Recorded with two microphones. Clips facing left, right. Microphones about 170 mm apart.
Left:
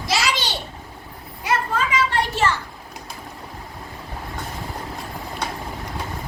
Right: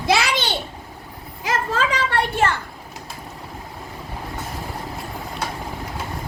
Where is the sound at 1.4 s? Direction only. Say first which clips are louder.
Even; 90° right; by 2.5 s 55° right (ahead or behind).